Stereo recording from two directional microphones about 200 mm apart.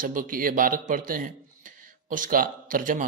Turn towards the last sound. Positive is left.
turn(degrees=-40)  # may be behind; listen again after turning